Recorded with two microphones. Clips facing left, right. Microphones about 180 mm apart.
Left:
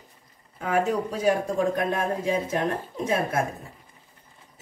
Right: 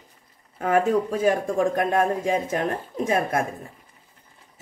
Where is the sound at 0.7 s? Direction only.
50° right (ahead or behind).